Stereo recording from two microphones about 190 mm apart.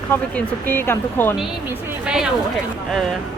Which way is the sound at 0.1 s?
10° left (ahead or behind).